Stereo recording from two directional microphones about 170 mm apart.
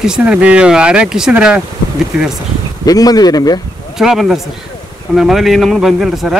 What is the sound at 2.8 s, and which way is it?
Speech, 20° left (ahead or behind).